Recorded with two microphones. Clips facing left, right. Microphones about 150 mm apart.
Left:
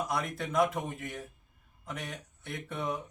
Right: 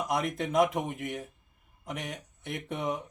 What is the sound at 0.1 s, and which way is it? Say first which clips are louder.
Speech: right 4 dB; 15° right (ahead or behind).